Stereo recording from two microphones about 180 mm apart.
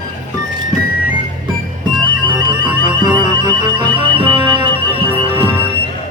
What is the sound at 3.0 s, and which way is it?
Music, 25° right (ahead or behind).